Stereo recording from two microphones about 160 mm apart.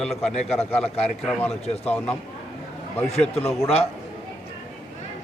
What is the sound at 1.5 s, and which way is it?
Speech, 40° left (ahead or behind).